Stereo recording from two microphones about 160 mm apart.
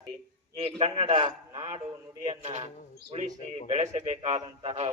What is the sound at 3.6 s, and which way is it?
A man's voice, 45° right (ahead or behind).